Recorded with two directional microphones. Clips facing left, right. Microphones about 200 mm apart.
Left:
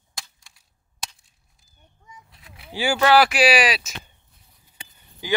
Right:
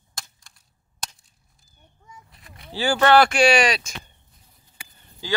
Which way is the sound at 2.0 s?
Centre (ahead or behind).